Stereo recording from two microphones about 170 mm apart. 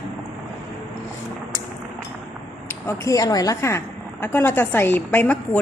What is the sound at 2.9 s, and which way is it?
A woman's voice, 20° left (ahead or behind).